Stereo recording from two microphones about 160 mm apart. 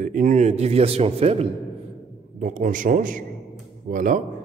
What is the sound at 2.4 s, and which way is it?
A man's voice, 55° right (ahead or behind).